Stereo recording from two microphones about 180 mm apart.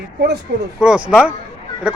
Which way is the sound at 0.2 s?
65° right (ahead or behind).